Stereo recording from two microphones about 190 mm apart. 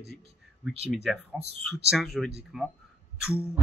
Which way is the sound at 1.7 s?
Centre (ahead or behind).